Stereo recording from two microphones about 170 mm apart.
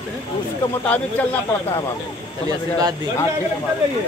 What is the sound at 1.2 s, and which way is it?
Speech, 10° left (ahead or behind).